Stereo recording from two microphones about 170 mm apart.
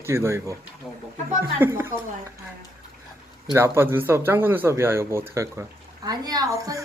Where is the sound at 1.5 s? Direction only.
15° right (ahead or behind).